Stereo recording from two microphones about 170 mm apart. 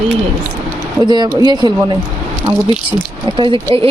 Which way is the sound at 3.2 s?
30° right (ahead or behind).